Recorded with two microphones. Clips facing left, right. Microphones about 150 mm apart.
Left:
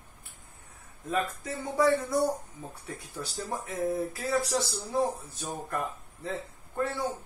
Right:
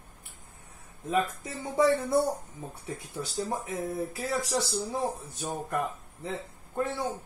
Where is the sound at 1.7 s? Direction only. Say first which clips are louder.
Right 1 dB; 25° right (ahead or behind).